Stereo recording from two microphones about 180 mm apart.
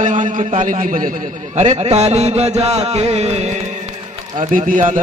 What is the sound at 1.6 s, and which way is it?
Music, 35° right (ahead or behind).